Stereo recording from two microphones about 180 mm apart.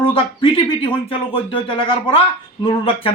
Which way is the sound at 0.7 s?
30° left (ahead or behind).